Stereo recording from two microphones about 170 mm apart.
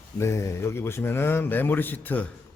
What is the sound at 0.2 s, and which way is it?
A man's voice, 15° left (ahead or behind).